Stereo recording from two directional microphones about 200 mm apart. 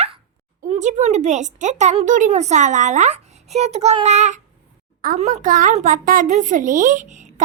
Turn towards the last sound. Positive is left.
turn(degrees=-35)  # may be behind; listen again after turning